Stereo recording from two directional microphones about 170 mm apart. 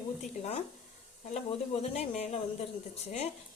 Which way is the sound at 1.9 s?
40° left (ahead or behind).